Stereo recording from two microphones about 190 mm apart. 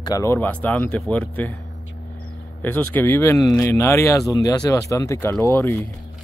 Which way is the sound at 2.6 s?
10° left (ahead or behind).